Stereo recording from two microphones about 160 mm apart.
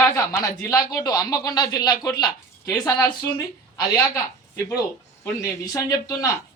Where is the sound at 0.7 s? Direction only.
20° left (ahead or behind).